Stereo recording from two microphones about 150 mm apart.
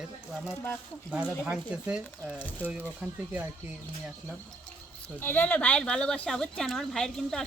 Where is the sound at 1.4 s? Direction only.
5° right (ahead or behind).